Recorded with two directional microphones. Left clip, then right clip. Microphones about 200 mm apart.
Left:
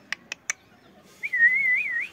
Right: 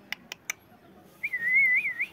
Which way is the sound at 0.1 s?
5° right (ahead or behind).